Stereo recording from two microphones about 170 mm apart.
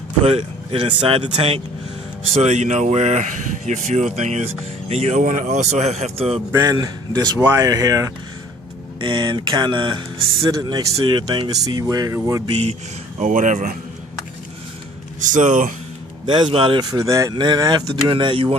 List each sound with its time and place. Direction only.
0.3 s speech: 35° right (ahead or behind)
5.2 s speech: 50° right (ahead or behind)
6.5 s speech: 20° right (ahead or behind)
12.5 s speech: 35° right (ahead or behind)
13.1 s speech: 45° right (ahead or behind)
15.2 s speech: 50° right (ahead or behind)
16.2 s speech: 30° right (ahead or behind)